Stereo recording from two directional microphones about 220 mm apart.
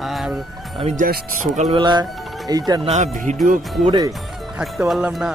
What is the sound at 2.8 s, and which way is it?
Speech, 30° right (ahead or behind).